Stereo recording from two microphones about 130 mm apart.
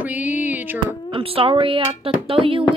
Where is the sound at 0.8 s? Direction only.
45° right (ahead or behind).